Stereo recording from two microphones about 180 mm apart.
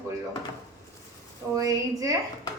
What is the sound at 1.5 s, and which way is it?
Speech, 20° right (ahead or behind).